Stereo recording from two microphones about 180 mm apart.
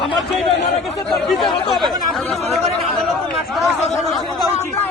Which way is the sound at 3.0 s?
Centre (ahead or behind).